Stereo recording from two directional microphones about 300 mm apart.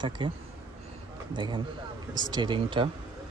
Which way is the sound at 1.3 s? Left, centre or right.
Centre.